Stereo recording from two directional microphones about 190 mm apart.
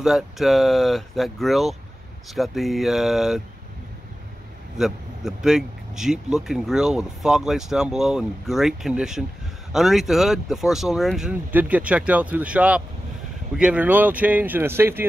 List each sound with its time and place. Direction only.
0.0 s speech: centre (ahead or behind)
4.7 s speech: centre (ahead or behind)